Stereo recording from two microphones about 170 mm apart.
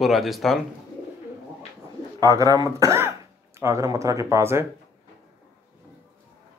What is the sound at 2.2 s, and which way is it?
Speech, 20° right (ahead or behind).